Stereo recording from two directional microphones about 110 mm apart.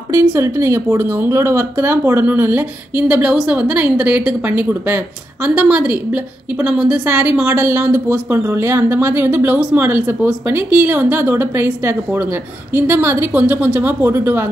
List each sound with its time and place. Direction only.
0.1 s speech: 20° right (ahead or behind)